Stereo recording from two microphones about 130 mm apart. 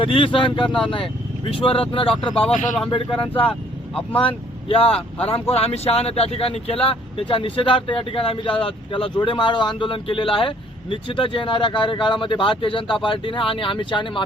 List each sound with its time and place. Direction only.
0.0 s speech: 40° left (ahead or behind)